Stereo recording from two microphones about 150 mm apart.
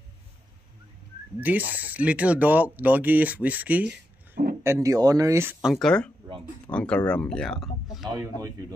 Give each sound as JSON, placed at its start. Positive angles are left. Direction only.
{"t": 1.4, "sound": "speech", "side_deg": -10}
{"t": 4.6, "sound": "speech", "side_deg": -20}
{"t": 5.6, "sound": "speech", "side_deg": 0}
{"t": 8.1, "sound": "speech", "side_deg": -25}